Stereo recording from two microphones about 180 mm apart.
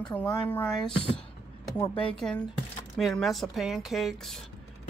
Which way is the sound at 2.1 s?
5° left (ahead or behind).